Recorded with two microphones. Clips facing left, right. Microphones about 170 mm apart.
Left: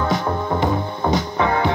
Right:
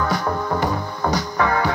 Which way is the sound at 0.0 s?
20° left (ahead or behind).